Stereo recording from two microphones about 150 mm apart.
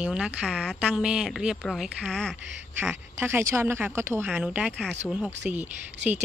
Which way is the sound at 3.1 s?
15° right (ahead or behind).